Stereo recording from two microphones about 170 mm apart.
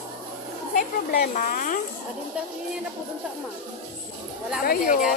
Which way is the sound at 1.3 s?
50° left (ahead or behind).